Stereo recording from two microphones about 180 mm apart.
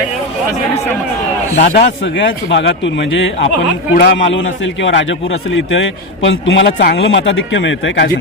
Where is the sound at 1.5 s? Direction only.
50° left (ahead or behind).